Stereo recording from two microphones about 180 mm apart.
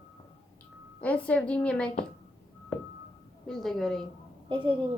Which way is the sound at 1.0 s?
10° left (ahead or behind).